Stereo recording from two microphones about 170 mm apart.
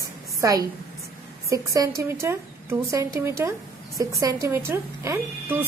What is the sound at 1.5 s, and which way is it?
A woman's voice, 20° right (ahead or behind).